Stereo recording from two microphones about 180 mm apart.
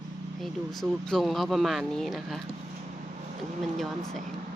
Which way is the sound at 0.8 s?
Centre (ahead or behind).